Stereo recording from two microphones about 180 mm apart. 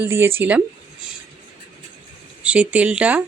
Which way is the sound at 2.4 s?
5° right (ahead or behind).